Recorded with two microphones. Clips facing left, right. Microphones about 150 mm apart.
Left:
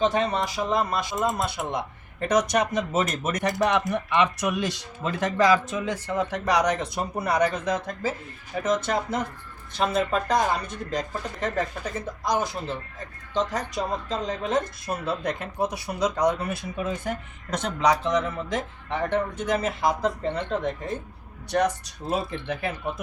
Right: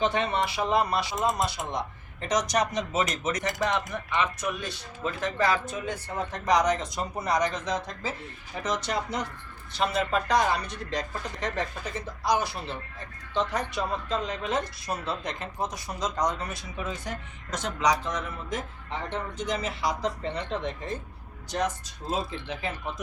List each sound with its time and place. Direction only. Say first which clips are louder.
0.1 s a woman's voice: left 2 dB; 40° left (ahead or behind)
15.4 s speech: left 5 dB; 60° left (ahead or behind)
21.5 s speech: left 5 dB; 65° left (ahead or behind)